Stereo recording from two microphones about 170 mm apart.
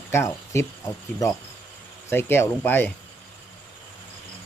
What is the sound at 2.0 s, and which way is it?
Speech, 15° left (ahead or behind).